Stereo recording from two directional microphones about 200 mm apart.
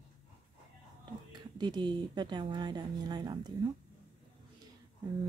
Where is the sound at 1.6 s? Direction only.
20° right (ahead or behind).